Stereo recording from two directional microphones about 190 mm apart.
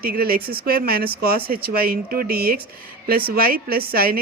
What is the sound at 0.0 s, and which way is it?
Speech, 50° right (ahead or behind).